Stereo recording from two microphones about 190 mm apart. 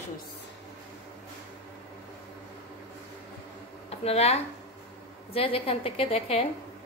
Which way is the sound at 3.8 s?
35° left (ahead or behind).